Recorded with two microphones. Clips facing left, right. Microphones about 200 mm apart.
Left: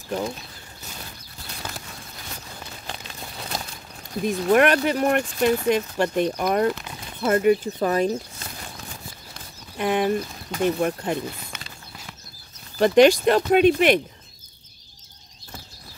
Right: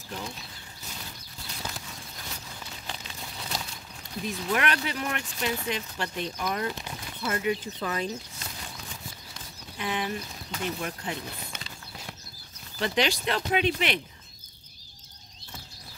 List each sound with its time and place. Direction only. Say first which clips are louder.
2.9 s crumpling: left 3 dB; 55° left (ahead or behind)
4.1 s speech: left 10 dB; 50° left (ahead or behind)
9.3 s speech: left 3 dB; 50° left (ahead or behind)
12.7 s speech: left 13 dB; 50° left (ahead or behind)